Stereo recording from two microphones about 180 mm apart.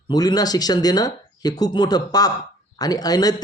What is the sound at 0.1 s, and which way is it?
Speech, 20° left (ahead or behind).